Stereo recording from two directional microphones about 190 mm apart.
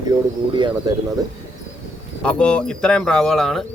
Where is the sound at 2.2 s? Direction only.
5° left (ahead or behind).